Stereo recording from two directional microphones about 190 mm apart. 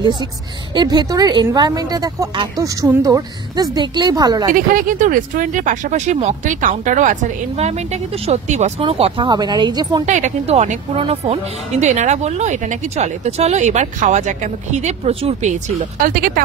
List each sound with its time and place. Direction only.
0.0 s a woman's voice: 25° right (ahead or behind)
4.6 s speech: 45° right (ahead or behind); by 10.0 s 20° right (ahead or behind)
10.0 s speech: 40° right (ahead or behind)